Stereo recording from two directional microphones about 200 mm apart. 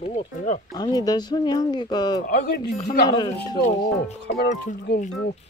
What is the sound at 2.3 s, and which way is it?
Speech, 50° left (ahead or behind).